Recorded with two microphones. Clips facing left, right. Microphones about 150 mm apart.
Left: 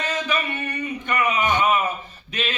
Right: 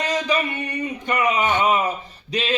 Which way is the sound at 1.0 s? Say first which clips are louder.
Right 2 dB; 30° right (ahead or behind).